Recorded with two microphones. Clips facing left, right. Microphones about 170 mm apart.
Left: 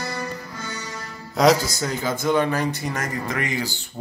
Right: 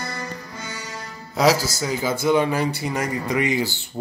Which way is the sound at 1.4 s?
5° right (ahead or behind).